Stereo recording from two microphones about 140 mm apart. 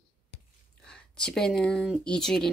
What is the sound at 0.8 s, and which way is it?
Speech, 5° left (ahead or behind).